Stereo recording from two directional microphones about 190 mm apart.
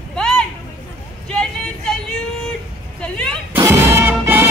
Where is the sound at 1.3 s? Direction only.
5° left (ahead or behind).